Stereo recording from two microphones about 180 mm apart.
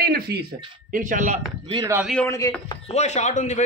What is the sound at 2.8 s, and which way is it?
Speech, 40° left (ahead or behind).